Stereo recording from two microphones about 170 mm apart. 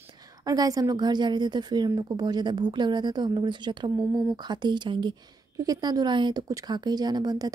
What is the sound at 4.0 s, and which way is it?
Speech, centre (ahead or behind).